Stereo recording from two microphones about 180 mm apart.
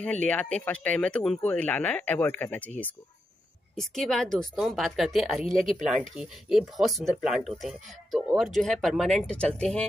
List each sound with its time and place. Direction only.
0.0 s speech: 5° left (ahead or behind)